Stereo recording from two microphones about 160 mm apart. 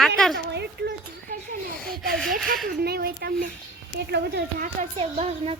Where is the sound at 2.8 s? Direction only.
75° right (ahead or behind).